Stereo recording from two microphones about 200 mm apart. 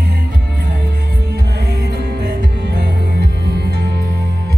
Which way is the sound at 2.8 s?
55° right (ahead or behind).